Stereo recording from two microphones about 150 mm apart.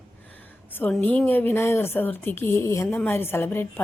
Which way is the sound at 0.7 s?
10° left (ahead or behind).